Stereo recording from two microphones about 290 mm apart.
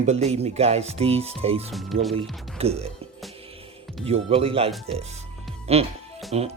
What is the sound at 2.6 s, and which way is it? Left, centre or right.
Speech, right.